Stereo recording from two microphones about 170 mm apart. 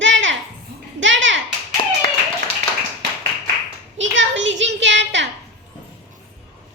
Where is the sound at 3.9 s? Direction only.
90° right.